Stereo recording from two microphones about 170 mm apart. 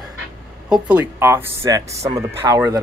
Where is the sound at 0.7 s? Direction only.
10° right (ahead or behind).